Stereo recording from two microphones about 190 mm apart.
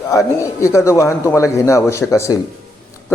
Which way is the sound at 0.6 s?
15° left (ahead or behind).